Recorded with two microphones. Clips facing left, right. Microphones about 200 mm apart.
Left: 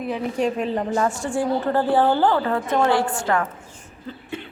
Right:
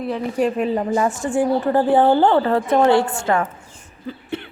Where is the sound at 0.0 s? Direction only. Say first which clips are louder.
Right 2 dB; centre (ahead or behind); by 3.4 s 25° right (ahead or behind).